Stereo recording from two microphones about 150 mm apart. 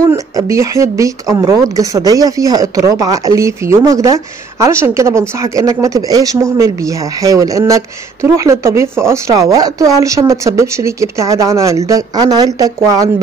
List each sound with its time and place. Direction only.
0.0 s speech: 20° right (ahead or behind)